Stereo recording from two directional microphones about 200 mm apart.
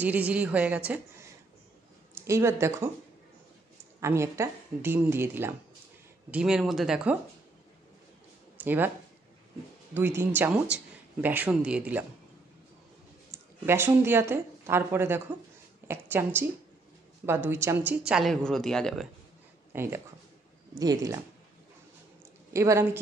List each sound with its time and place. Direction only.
0.0 s speech: 10° right (ahead or behind)
2.1 s speech: 15° right (ahead or behind)
4.0 s speech: 15° right (ahead or behind)
8.5 s speech: 10° right (ahead or behind)
9.9 s speech: 10° right (ahead or behind)
13.3 s a woman's voice: 10° right (ahead or behind)
17.5 s speech: 10° right (ahead or behind)
19.7 s speech: 10° right (ahead or behind)
22.5 s a woman's voice: 15° right (ahead or behind)